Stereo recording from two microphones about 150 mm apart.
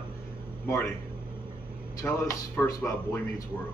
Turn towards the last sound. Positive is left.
turn(degrees=20)  # may be behind; listen again after turning